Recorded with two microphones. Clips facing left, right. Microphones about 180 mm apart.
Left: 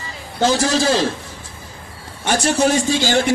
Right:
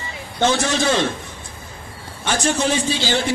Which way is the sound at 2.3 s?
40° left (ahead or behind).